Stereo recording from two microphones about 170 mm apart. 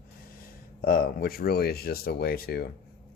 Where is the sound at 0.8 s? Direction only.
55° left (ahead or behind).